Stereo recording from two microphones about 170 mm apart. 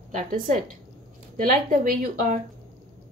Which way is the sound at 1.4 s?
55° right (ahead or behind).